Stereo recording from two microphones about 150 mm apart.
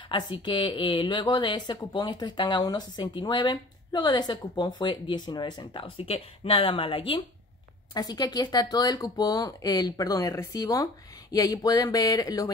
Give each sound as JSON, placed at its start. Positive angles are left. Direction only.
{"t": 0.1, "sound": "speech", "side_deg": 30}